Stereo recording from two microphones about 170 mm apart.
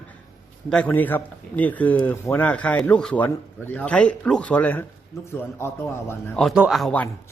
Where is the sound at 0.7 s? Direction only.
10° left (ahead or behind).